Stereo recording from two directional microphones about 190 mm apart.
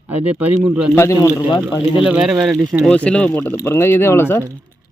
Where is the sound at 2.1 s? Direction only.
5° right (ahead or behind); by 4.4 s 10° left (ahead or behind).